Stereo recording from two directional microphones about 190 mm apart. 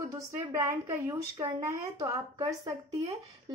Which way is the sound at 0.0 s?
15° right (ahead or behind).